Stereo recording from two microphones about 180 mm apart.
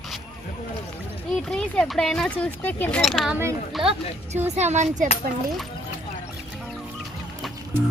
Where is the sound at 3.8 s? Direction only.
30° right (ahead or behind).